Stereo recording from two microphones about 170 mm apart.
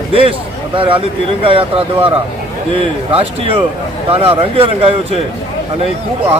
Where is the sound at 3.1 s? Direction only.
35° right (ahead or behind).